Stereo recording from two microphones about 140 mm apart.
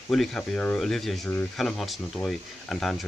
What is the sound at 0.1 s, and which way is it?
Speech, 5° left (ahead or behind).